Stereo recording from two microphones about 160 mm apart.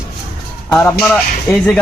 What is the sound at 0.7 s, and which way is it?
Speech, 15° left (ahead or behind).